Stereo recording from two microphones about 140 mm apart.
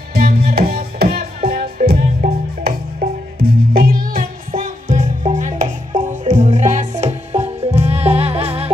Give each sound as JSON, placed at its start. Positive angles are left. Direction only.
{"t": 0.1, "sound": "music", "side_deg": -90}